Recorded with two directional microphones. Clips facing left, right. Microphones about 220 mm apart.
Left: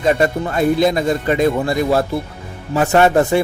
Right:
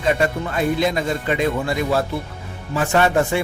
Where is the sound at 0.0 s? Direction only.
40° left (ahead or behind).